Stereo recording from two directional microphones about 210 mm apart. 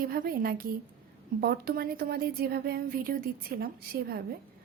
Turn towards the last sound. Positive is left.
turn(degrees=-45)  # may be behind; listen again after turning